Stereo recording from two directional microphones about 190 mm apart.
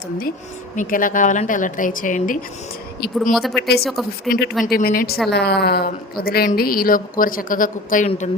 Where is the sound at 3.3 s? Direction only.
Centre (ahead or behind).